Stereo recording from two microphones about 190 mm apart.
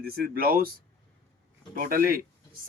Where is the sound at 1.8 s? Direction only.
50° right (ahead or behind).